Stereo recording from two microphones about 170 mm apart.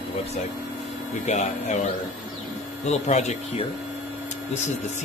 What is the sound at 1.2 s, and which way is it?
Speech, 45° left (ahead or behind).